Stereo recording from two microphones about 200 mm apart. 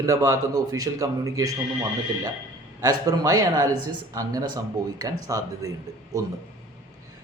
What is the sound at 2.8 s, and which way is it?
A man's voice, 20° right (ahead or behind).